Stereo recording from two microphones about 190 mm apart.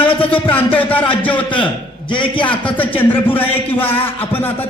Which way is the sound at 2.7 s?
10° left (ahead or behind).